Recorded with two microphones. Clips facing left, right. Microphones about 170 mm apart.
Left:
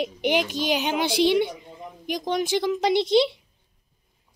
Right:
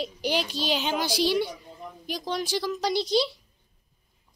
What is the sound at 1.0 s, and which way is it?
Speech, 60° left (ahead or behind).